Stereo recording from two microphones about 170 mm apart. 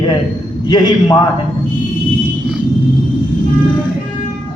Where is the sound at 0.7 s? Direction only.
25° left (ahead or behind).